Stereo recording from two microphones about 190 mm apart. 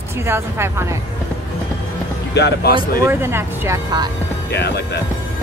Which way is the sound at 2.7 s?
15° right (ahead or behind).